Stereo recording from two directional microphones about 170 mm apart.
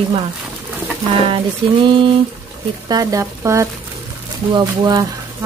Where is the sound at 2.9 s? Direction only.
20° right (ahead or behind).